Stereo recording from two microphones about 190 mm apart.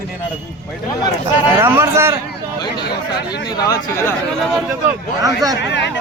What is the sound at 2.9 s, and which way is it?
Speech, 55° left (ahead or behind).